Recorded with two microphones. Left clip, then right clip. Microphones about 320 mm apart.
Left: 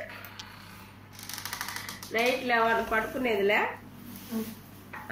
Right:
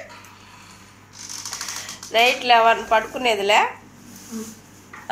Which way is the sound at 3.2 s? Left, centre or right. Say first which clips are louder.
Right 6 dB; right.